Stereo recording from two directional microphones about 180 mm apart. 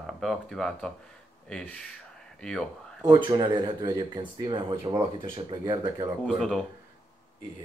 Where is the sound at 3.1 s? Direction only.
25° right (ahead or behind).